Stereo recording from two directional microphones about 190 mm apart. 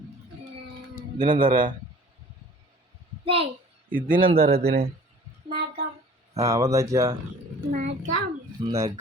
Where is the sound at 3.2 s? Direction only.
30° right (ahead or behind).